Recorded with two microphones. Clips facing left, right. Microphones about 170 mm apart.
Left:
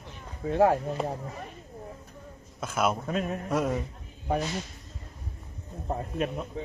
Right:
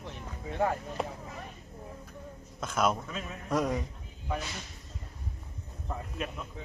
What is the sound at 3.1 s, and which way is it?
Mantra, 50° left (ahead or behind).